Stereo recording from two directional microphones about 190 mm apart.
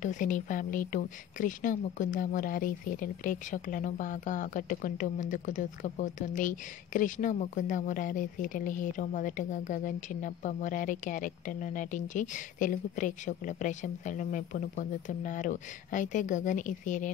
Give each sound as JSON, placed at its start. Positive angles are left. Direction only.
{"t": 0.0, "sound": "a woman's voice", "side_deg": 40}